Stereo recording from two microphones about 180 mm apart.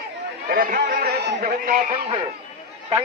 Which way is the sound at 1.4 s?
50° right (ahead or behind).